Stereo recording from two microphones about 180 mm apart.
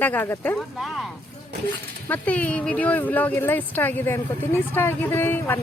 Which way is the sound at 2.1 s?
10° left (ahead or behind).